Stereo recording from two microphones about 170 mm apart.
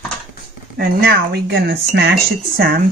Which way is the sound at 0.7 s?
65° right (ahead or behind).